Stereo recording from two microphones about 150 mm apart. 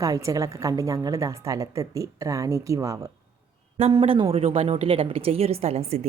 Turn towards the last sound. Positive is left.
turn(degrees=-45)  # may be behind; listen again after turning